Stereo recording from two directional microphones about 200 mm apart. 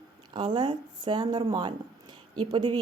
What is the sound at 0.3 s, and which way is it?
A woman's voice, 20° right (ahead or behind).